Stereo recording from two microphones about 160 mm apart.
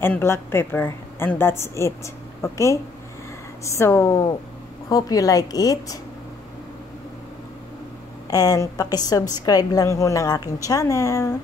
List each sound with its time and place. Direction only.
0.0 s a woman's voice: 15° left (ahead or behind)
8.3 s a woman's voice: 20° left (ahead or behind)